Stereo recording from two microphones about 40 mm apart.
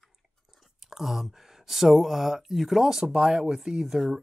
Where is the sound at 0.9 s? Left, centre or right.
Centre.